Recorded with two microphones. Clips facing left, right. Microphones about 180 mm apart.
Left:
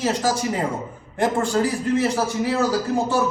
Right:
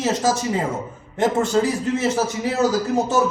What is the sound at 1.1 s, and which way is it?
Speech, 20° right (ahead or behind).